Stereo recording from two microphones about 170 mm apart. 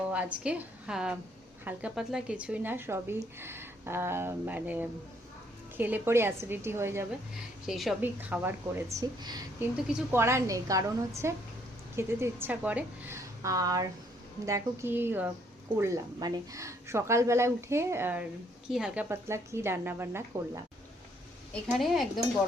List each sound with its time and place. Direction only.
0.1 s a woman's voice: 5° right (ahead or behind)
7.7 s a woman's voice: centre (ahead or behind)
19.0 s speech: 15° right (ahead or behind)
21.5 s a woman's voice: centre (ahead or behind)